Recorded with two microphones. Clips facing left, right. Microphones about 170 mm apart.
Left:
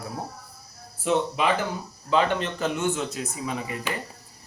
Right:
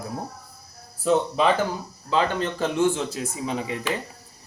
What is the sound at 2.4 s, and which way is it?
Speech, 30° right (ahead or behind).